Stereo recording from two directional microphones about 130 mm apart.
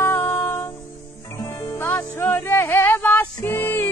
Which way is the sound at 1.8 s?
15° left (ahead or behind).